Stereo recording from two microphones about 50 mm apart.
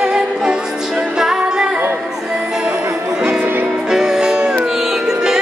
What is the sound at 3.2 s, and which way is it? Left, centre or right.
Music, right.